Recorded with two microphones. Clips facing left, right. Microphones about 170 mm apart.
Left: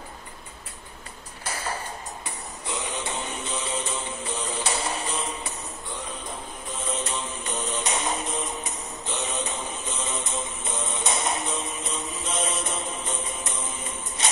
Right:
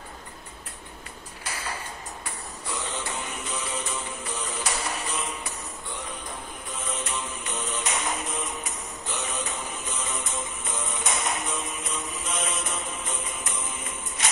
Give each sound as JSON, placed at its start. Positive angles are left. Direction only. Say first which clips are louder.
{"t": 1.4, "sound": "music", "louder": "left 4 dB", "side_deg": 40}
{"t": 2.2, "sound": "music", "louder": "left 1 dB", "side_deg": 20}